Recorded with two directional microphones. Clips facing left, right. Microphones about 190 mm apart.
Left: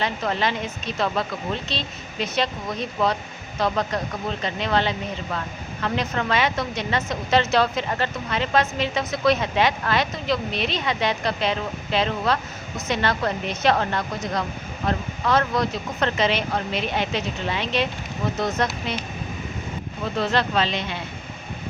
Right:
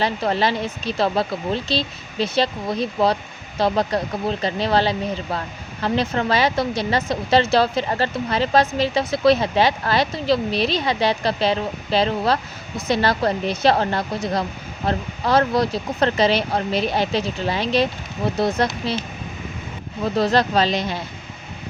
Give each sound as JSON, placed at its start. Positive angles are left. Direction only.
{"t": 0.0, "sound": "speech", "side_deg": -35}
{"t": 20.1, "sound": "speech", "side_deg": -40}